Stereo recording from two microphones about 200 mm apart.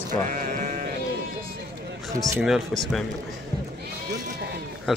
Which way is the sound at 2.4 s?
Centre (ahead or behind).